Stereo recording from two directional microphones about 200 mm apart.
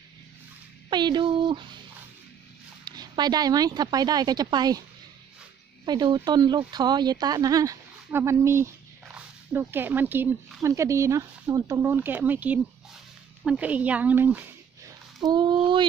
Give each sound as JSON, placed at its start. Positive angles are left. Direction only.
{"t": 0.8, "sound": "speech", "side_deg": -20}
{"t": 2.8, "sound": "speech", "side_deg": -20}
{"t": 5.9, "sound": "speech", "side_deg": -20}
{"t": 15.2, "sound": "speech", "side_deg": -20}